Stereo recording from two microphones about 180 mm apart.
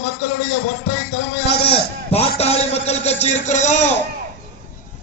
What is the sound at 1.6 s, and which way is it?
A man's voice, 30° left (ahead or behind).